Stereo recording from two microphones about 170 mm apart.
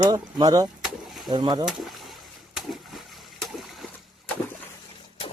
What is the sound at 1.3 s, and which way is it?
Speech, 25° right (ahead or behind).